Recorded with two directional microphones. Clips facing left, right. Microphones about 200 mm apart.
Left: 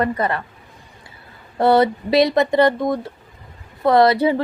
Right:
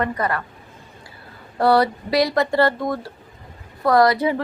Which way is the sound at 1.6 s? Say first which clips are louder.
Left 2 dB; 25° left (ahead or behind).